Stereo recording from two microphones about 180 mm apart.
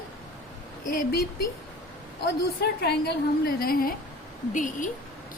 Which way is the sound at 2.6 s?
60° left (ahead or behind).